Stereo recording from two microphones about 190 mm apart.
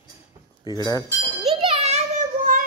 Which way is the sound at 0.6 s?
20° left (ahead or behind).